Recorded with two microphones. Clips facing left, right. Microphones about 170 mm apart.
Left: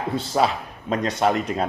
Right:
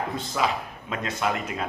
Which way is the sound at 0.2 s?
35° left (ahead or behind).